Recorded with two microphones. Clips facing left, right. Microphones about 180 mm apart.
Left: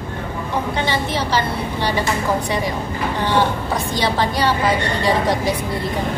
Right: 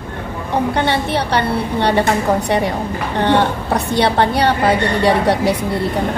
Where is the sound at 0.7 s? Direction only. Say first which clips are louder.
Right 4 dB; 65° right (ahead or behind).